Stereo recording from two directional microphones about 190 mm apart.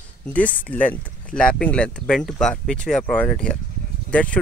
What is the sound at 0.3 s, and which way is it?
Speech, 10° left (ahead or behind).